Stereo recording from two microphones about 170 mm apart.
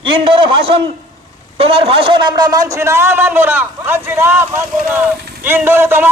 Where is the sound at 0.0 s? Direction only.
30° right (ahead or behind).